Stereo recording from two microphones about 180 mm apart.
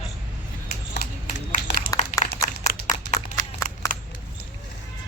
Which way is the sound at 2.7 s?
55° left (ahead or behind).